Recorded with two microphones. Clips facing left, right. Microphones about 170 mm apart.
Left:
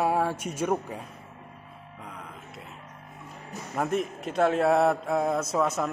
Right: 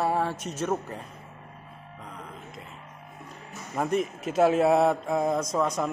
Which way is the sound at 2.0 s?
5° left (ahead or behind).